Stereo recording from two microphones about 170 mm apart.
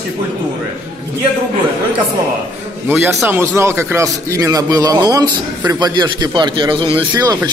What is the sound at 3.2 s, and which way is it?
A man's voice, 15° right (ahead or behind).